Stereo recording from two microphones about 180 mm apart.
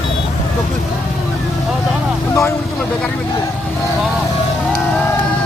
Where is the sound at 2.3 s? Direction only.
15° left (ahead or behind).